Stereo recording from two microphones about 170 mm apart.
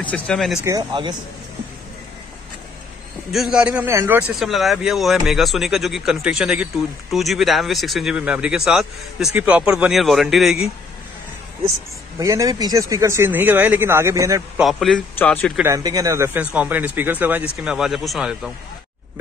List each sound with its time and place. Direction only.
0.0 s speech: 5° left (ahead or behind)
0.7 s speech: 25° right (ahead or behind)
3.3 s speech: centre (ahead or behind)
4.4 s speech: centre (ahead or behind)
12.2 s speech: 20° right (ahead or behind)
14.6 s speech: centre (ahead or behind)
15.5 s speech: 15° right (ahead or behind); by 18.5 s centre (ahead or behind)